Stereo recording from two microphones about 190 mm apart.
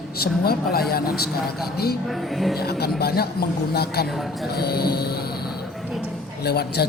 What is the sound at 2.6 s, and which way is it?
Speech, 55° left (ahead or behind).